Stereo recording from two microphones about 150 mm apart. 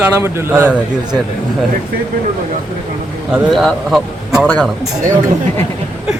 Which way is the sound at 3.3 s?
Centre (ahead or behind).